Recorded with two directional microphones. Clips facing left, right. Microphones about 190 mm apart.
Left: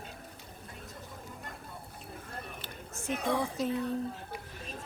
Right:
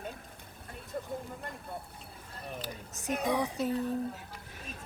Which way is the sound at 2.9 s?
15° right (ahead or behind).